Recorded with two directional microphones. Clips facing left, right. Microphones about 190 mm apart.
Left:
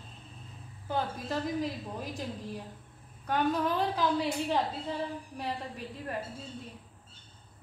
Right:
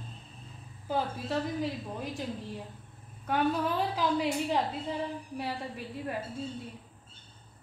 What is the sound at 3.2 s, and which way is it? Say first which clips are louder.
A woman's voice: even; 5° right (ahead or behind).